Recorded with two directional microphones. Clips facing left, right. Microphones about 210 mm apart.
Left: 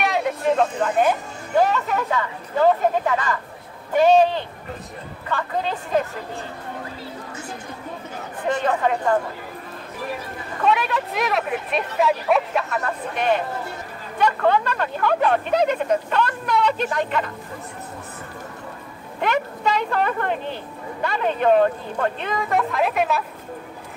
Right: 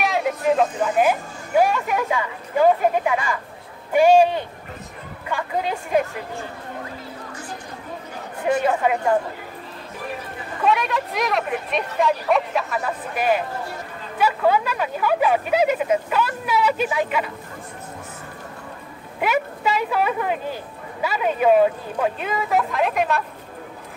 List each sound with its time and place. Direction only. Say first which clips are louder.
0.0 s speech: even; centre (ahead or behind)
8.5 s speech: right 2 dB; 10° right (ahead or behind)
10.6 s speech: even; centre (ahead or behind)
19.2 s speech: even; 5° right (ahead or behind)